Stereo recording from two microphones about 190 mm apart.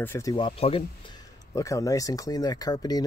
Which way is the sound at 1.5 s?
15° left (ahead or behind).